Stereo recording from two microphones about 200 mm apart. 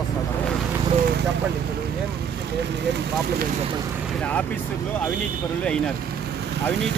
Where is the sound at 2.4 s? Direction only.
60° right (ahead or behind).